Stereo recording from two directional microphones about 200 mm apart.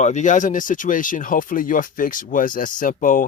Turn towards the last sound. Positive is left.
turn(degrees=45)  # may be behind; listen again after turning